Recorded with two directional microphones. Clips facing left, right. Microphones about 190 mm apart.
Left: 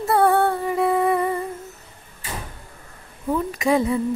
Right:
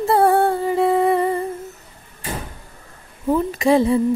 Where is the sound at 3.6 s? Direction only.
30° right (ahead or behind).